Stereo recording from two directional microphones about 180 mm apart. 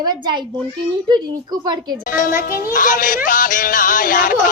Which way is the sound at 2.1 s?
50° left (ahead or behind).